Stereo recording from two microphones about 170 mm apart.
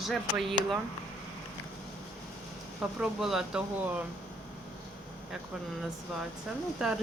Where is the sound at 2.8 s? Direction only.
5° right (ahead or behind).